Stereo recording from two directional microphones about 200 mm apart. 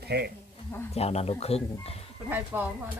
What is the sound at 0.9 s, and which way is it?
Speech, 30° left (ahead or behind).